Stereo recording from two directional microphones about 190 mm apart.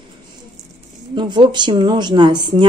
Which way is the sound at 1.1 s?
25° right (ahead or behind).